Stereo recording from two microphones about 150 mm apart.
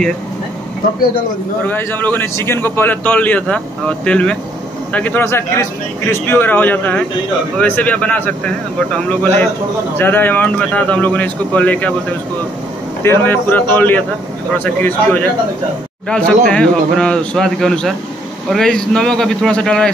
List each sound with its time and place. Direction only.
1.7 s a man's voice: 15° left (ahead or behind)
13.0 s a man's voice: 15° left (ahead or behind)